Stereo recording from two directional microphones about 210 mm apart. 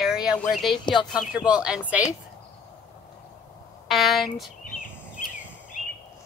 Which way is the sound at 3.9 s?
Centre (ahead or behind).